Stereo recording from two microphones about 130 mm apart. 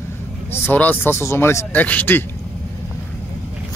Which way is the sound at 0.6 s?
15° left (ahead or behind).